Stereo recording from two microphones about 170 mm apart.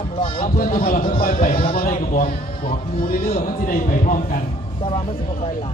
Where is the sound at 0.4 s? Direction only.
55° left (ahead or behind).